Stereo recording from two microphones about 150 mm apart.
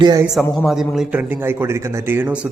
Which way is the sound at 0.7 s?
5° right (ahead or behind).